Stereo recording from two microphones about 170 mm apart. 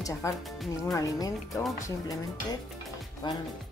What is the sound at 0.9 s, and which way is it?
Speech, 20° left (ahead or behind).